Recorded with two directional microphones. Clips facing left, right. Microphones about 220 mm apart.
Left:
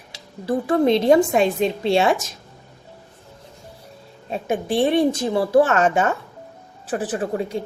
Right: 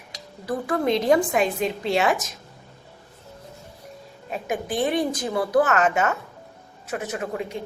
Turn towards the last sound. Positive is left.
turn(degrees=35)  # may be behind; listen again after turning